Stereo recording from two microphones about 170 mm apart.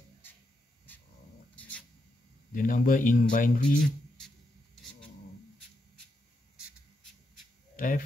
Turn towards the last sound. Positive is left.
turn(degrees=55)  # may be behind; listen again after turning